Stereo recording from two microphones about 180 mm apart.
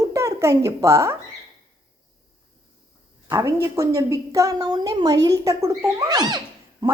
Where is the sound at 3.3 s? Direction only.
15° right (ahead or behind).